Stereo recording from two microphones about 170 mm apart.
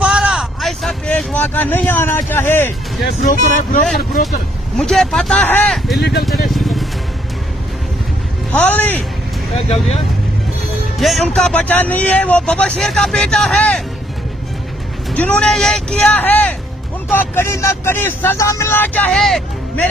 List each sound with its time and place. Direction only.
0.0 s a sound: 5° right (ahead or behind); by 2.7 s 15° left (ahead or behind)
3.3 s speech: 50° left (ahead or behind)
4.7 s speech: 5° left (ahead or behind)
5.9 s speech: 70° left (ahead or behind)
6.5 s vehicle: centre (ahead or behind)
8.5 s speech: 10° left (ahead or behind)
9.5 s speech: 35° left (ahead or behind)
11.0 s speech: centre (ahead or behind)
15.0 s speech: 5° left (ahead or behind)